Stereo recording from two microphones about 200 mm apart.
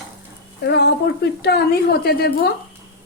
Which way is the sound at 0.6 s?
55° left (ahead or behind).